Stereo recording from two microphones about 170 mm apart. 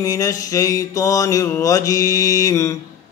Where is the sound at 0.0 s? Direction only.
20° left (ahead or behind).